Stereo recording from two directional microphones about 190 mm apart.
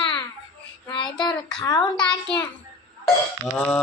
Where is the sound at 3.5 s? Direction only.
10° left (ahead or behind).